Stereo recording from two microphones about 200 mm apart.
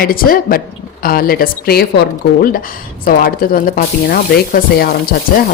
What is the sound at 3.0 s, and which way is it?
Speech, 45° left (ahead or behind).